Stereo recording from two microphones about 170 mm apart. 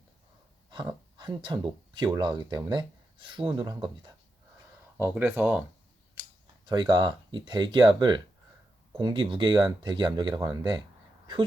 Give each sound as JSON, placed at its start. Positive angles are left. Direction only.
{"t": 0.7, "sound": "speech", "side_deg": -25}
{"t": 4.9, "sound": "speech", "side_deg": -10}
{"t": 6.7, "sound": "speech", "side_deg": -25}